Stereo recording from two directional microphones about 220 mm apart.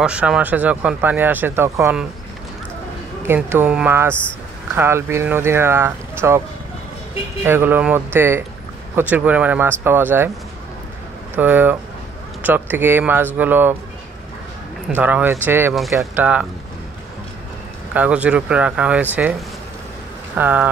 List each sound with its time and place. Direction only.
0.0 s speech: 5° right (ahead or behind)
3.3 s speech: 10° right (ahead or behind)
7.4 s speech: 10° right (ahead or behind)
11.3 s speech: 10° right (ahead or behind)
14.9 s speech: 5° right (ahead or behind)
17.9 s speech: 5° right (ahead or behind)
20.3 s speech: 5° right (ahead or behind)